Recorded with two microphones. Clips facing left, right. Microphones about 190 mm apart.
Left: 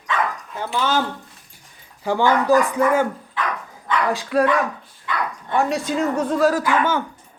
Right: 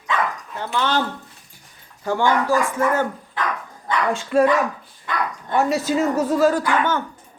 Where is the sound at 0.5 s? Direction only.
10° left (ahead or behind).